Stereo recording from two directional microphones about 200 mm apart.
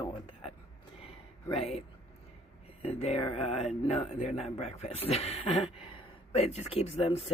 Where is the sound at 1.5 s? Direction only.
30° left (ahead or behind).